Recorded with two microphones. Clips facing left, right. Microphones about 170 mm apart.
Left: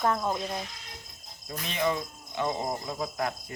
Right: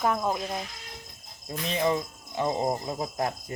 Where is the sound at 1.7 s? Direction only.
30° right (ahead or behind).